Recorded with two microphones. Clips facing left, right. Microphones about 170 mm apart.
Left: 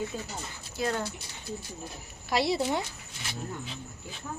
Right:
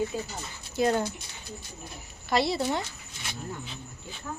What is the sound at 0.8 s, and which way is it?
Speech, 20° right (ahead or behind).